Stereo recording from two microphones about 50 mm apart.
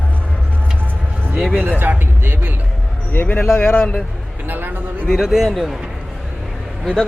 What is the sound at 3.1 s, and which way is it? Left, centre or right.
Speech, left.